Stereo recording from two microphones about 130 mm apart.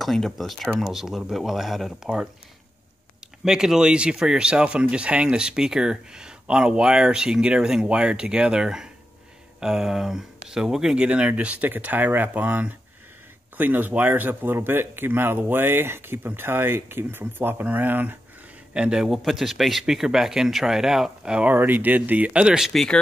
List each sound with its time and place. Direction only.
0.0 s speech: centre (ahead or behind)
3.4 s speech: 5° right (ahead or behind)
22.7 s speech: 5° left (ahead or behind)